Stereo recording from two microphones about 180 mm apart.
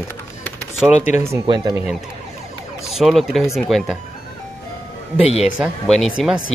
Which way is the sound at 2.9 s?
Centre (ahead or behind).